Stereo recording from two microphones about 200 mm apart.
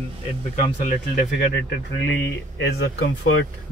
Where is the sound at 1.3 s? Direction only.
60° left (ahead or behind); by 3.5 s 75° left (ahead or behind).